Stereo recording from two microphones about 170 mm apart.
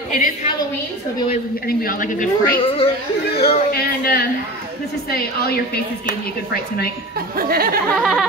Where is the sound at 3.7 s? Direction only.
60° left (ahead or behind).